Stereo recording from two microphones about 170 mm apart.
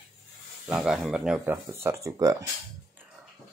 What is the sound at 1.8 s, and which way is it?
Speech, 20° right (ahead or behind).